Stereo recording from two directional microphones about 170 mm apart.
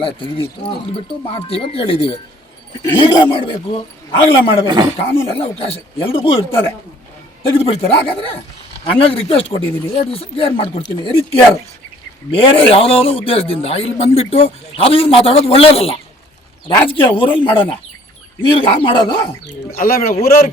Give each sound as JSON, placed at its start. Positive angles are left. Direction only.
{"t": 0.0, "sound": "a man's voice", "side_deg": 30}
{"t": 19.5, "sound": "speech", "side_deg": 60}